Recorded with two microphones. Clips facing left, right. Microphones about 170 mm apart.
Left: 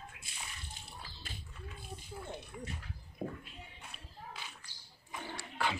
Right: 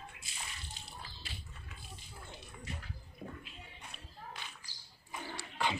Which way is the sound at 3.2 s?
50° left (ahead or behind).